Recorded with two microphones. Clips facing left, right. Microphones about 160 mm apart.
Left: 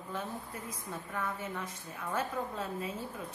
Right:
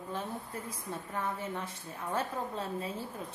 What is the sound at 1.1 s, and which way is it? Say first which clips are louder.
A woman's voice: right 1 dB; 30° right (ahead or behind).